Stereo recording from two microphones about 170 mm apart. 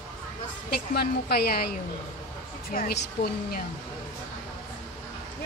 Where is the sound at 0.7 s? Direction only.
70° left (ahead or behind).